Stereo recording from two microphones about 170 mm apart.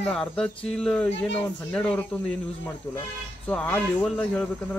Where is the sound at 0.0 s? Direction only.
5° left (ahead or behind).